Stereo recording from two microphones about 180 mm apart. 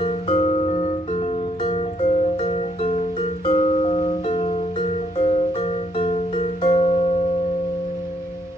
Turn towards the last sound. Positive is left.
turn(degrees=35)  # may be behind; listen again after turning